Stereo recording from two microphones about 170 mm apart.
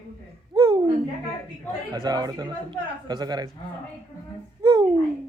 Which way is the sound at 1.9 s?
25° right (ahead or behind).